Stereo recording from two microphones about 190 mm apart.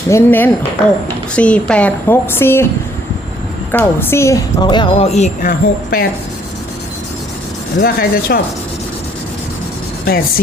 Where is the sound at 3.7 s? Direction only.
10° left (ahead or behind); by 6.0 s 45° left (ahead or behind).